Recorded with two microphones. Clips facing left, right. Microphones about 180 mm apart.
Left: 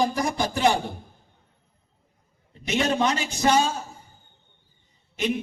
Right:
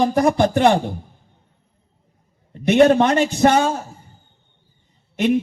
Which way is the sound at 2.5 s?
55° right (ahead or behind).